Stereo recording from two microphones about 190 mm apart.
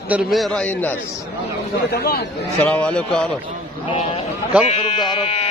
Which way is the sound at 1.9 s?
55° left (ahead or behind).